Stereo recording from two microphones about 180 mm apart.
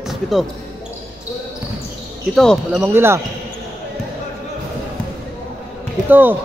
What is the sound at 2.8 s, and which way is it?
Speech, 15° right (ahead or behind).